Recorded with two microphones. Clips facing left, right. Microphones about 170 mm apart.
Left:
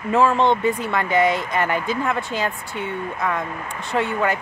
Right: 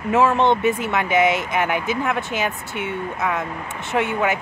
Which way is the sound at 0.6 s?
90° right.